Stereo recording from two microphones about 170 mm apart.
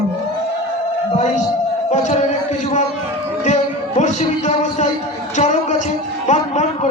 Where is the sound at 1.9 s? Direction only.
45° left (ahead or behind).